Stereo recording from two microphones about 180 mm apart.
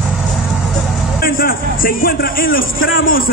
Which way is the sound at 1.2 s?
55° left (ahead or behind).